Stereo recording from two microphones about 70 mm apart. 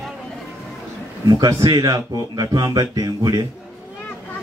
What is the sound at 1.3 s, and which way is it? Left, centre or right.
Speech, right.